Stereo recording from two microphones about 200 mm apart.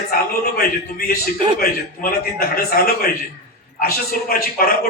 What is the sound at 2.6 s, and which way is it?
A man's voice, 50° left (ahead or behind).